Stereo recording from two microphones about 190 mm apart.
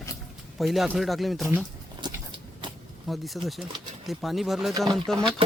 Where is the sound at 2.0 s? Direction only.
25° right (ahead or behind).